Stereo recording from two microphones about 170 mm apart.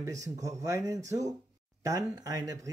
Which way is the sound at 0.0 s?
20° right (ahead or behind).